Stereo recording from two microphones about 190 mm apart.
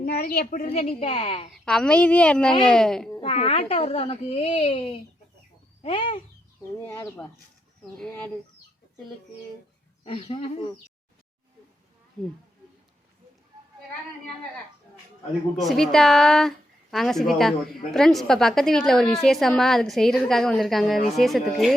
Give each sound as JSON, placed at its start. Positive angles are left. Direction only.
{"t": 0.0, "sound": "a woman's voice", "side_deg": 55}
{"t": 0.7, "sound": "a child's voice", "side_deg": 35}
{"t": 1.6, "sound": "a woman's voice", "side_deg": 5}
{"t": 3.2, "sound": "a child's voice", "side_deg": 30}
{"t": 6.8, "sound": "speech", "side_deg": 10}
{"t": 10.0, "sound": "speech", "side_deg": 30}
{"t": 12.2, "sound": "a woman's voice", "side_deg": 5}
{"t": 15.5, "sound": "a woman's voice", "side_deg": 0}